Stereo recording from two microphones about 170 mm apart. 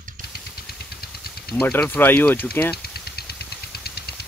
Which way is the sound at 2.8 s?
70° left (ahead or behind).